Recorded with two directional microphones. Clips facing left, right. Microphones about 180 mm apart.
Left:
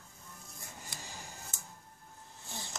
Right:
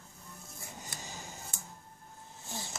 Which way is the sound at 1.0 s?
20° right (ahead or behind).